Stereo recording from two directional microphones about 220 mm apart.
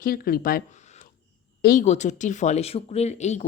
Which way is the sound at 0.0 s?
40° left (ahead or behind).